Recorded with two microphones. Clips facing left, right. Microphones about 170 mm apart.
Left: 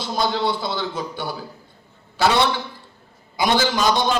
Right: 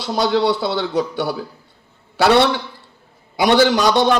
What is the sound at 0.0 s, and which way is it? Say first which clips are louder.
A man's voice: right 5 dB; 70° right (ahead or behind).